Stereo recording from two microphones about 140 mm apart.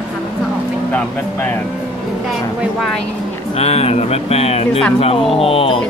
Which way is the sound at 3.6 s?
50° left (ahead or behind).